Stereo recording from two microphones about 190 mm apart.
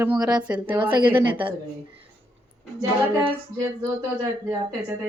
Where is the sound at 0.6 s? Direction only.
25° right (ahead or behind).